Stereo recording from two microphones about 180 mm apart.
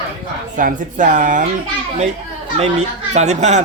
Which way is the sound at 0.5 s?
50° right (ahead or behind).